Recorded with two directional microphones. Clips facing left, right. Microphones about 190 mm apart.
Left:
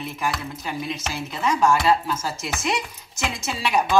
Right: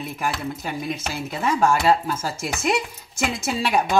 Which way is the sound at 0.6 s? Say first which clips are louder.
Right 1 dB; 55° right (ahead or behind).